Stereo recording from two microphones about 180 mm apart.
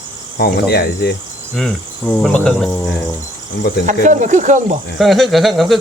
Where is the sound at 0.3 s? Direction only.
65° left (ahead or behind).